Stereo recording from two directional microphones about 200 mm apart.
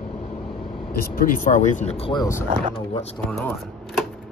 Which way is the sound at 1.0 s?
45° left (ahead or behind).